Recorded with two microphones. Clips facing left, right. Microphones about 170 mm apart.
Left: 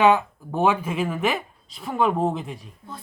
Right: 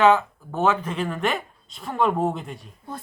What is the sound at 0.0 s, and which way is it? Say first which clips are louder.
Speech: even; 15° left (ahead or behind).